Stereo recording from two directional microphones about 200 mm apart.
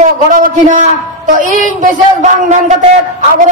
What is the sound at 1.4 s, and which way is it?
Speech, 40° left (ahead or behind).